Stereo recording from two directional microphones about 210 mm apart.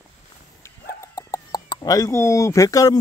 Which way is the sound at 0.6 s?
15° left (ahead or behind).